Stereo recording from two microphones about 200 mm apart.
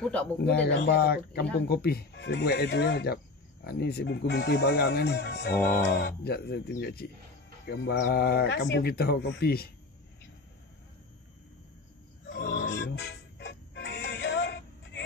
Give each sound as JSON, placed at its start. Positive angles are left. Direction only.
{"t": 0.0, "sound": "speech", "side_deg": 5}
{"t": 0.4, "sound": "speech", "side_deg": 55}
{"t": 12.3, "sound": "music", "side_deg": 60}